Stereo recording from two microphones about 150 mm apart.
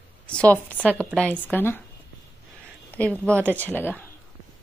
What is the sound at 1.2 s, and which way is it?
Speech, 10° left (ahead or behind).